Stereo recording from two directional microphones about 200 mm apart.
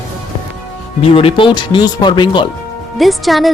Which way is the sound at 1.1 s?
25° left (ahead or behind).